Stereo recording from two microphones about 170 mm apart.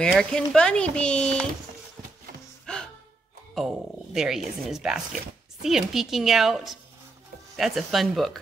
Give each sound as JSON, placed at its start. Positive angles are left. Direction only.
{"t": 0.0, "sound": "a woman's voice", "side_deg": 5}
{"t": 2.6, "sound": "music", "side_deg": 5}
{"t": 3.5, "sound": "a woman's voice", "side_deg": 0}